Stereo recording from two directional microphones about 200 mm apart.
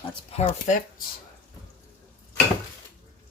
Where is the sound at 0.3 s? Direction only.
40° left (ahead or behind).